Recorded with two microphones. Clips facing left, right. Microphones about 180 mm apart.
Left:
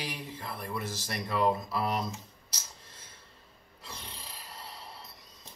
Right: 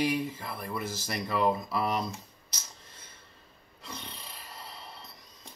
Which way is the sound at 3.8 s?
Centre (ahead or behind).